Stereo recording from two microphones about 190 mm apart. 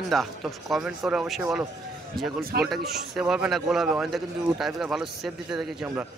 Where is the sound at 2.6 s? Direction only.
Centre (ahead or behind).